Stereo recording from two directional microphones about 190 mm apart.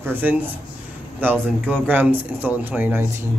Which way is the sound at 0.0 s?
10° right (ahead or behind).